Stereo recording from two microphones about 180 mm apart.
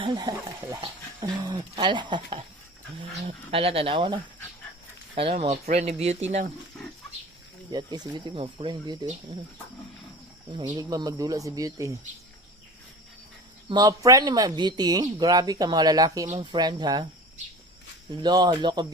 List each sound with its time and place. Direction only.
0.0 s speech: 25° right (ahead or behind); by 6.5 s 40° right (ahead or behind)
7.7 s speech: 25° right (ahead or behind)
10.5 s speech: 25° right (ahead or behind)
13.7 s speech: 20° right (ahead or behind)
18.2 s speech: 25° right (ahead or behind)